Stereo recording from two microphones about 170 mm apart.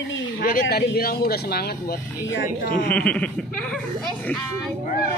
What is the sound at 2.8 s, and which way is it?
Laughter, 10° left (ahead or behind).